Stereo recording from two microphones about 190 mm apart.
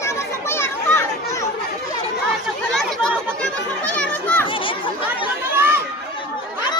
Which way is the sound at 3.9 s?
10° left (ahead or behind).